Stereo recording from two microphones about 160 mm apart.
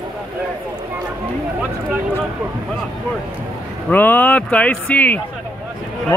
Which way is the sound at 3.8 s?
10° left (ahead or behind).